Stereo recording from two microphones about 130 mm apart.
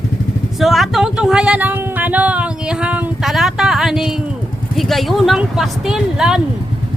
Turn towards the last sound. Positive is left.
turn(degrees=-5)  # may be behind; listen again after turning